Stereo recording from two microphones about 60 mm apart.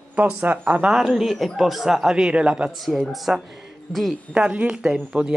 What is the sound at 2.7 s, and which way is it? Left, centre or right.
Speech, centre.